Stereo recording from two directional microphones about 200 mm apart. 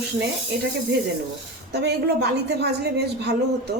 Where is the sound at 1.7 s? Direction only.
55° right (ahead or behind).